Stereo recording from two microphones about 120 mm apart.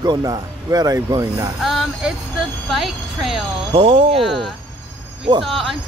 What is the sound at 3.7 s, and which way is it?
Speech, 55° right (ahead or behind).